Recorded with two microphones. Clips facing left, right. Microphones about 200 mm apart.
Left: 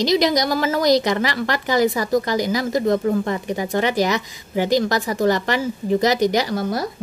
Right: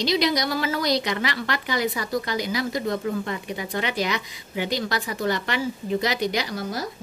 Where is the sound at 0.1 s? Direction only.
45° left (ahead or behind).